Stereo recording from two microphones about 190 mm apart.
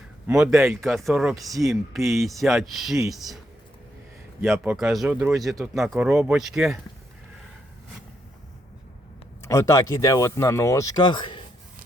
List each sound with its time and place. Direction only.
0.3 s speech: 5° right (ahead or behind)
4.4 s speech: 5° right (ahead or behind)
9.4 s speech: 15° left (ahead or behind)